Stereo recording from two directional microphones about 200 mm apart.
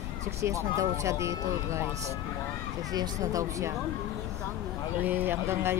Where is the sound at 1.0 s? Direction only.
15° right (ahead or behind).